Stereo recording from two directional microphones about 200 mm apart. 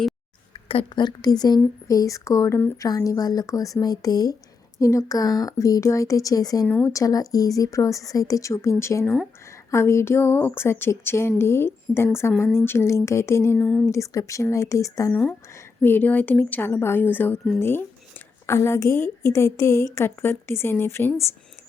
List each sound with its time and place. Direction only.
0.5 s speech: 30° left (ahead or behind); by 21.3 s 15° left (ahead or behind)